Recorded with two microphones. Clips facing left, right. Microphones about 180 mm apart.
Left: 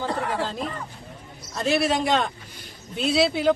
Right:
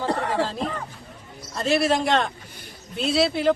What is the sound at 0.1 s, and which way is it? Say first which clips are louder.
Chatter: right 3 dB; 65° right (ahead or behind).